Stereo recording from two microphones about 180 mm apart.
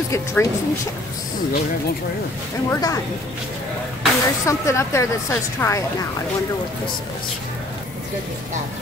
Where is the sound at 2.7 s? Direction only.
20° left (ahead or behind).